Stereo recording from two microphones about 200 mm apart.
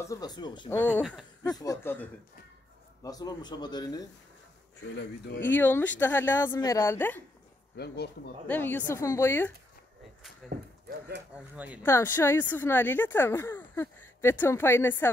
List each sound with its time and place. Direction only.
0.0 s a man's voice: 20° left (ahead or behind)
0.7 s a man's voice: 10° left (ahead or behind)
5.4 s speech: 10° left (ahead or behind)
7.7 s speech: 55° left (ahead or behind)
8.5 s speech: 10° left (ahead or behind)
10.5 s speech: 55° right (ahead or behind)
11.5 s speech: 5° right (ahead or behind)
11.8 s speech: 10° left (ahead or behind)